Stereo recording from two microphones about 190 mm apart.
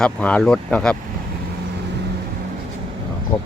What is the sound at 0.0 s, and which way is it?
Speech, 5° left (ahead or behind).